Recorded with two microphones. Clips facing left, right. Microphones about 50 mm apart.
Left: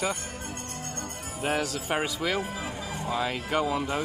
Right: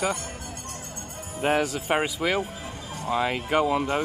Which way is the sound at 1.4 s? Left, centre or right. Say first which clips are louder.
Right 5 dB; right.